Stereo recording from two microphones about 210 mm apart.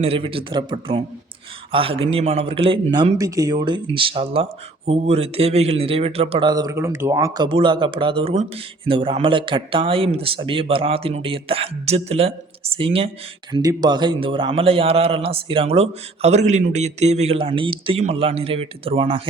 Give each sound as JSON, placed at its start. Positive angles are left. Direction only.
{"t": 0.0, "sound": "a man's voice", "side_deg": -25}